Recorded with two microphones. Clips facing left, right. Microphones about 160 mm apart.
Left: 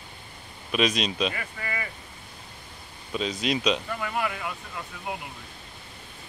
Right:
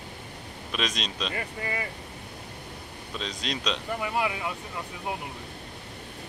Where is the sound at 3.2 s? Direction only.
5° left (ahead or behind).